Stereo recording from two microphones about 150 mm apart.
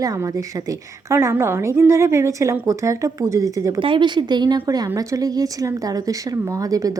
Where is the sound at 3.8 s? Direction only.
35° right (ahead or behind).